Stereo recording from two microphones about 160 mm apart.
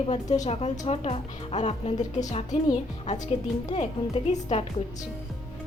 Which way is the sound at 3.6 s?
45° left (ahead or behind).